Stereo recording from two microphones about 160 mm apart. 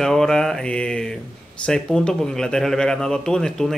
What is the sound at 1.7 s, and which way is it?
A man's voice, 5° left (ahead or behind).